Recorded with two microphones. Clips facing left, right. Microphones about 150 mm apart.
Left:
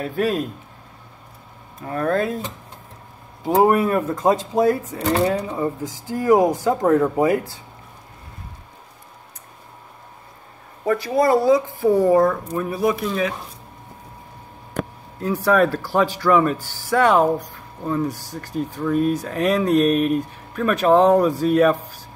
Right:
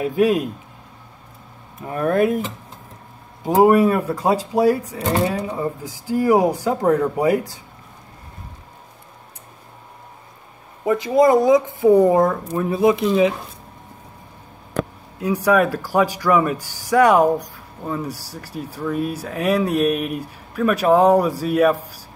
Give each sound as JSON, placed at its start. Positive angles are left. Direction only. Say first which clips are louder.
{"t": 0.0, "sound": "speech", "louder": "right 4 dB", "side_deg": -15}
{"t": 1.9, "sound": "speech", "louder": "right 3 dB", "side_deg": -15}
{"t": 3.4, "sound": "speech", "louder": "right 3 dB", "side_deg": -15}
{"t": 10.9, "sound": "speech", "louder": "right 3 dB", "side_deg": -20}
{"t": 15.1, "sound": "speech", "louder": "right 1 dB", "side_deg": -10}